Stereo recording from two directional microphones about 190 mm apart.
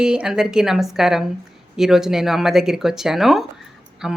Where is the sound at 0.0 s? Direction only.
5° right (ahead or behind).